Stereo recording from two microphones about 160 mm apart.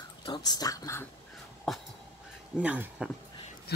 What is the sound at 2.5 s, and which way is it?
Speech, 10° right (ahead or behind).